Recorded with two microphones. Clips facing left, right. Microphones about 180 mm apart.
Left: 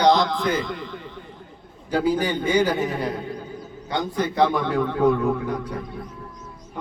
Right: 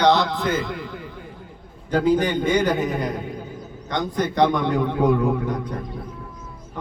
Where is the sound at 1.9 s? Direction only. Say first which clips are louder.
Right 3 dB; 10° left (ahead or behind).